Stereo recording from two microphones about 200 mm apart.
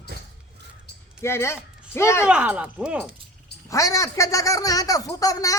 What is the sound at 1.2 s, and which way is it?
Speech, 15° left (ahead or behind).